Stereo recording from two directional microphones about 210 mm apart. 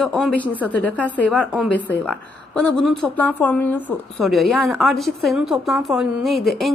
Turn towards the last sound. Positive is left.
turn(degrees=0)  # may be behind; listen again after turning